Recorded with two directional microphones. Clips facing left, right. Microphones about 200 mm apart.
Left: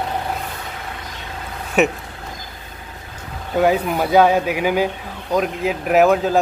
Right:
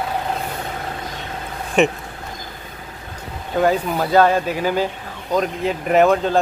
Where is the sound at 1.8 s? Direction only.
5° left (ahead or behind).